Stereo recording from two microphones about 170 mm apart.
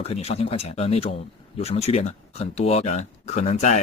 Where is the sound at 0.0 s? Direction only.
35° left (ahead or behind).